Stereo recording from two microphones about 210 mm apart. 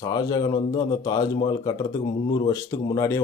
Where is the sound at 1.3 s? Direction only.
25° left (ahead or behind).